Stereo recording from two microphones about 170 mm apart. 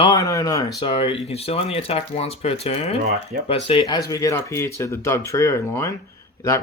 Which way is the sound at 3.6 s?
25° left (ahead or behind).